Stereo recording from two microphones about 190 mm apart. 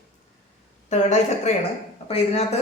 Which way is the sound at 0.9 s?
35° left (ahead or behind).